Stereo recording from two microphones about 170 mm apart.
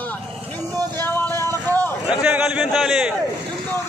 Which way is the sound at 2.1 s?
10° right (ahead or behind).